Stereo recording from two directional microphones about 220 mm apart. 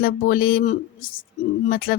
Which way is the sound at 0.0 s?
40° left (ahead or behind).